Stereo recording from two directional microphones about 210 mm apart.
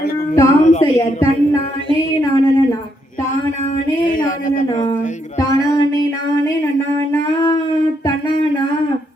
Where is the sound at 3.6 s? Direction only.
35° left (ahead or behind).